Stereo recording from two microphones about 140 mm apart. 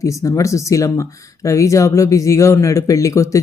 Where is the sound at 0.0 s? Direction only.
25° left (ahead or behind).